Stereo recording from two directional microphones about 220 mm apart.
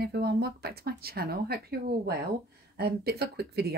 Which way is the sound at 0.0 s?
45° right (ahead or behind).